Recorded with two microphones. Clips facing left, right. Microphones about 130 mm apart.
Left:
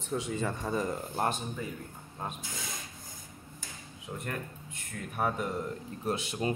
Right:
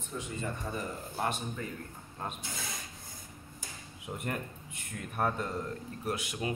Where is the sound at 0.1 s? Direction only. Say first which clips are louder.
Left 5 dB; 90° left.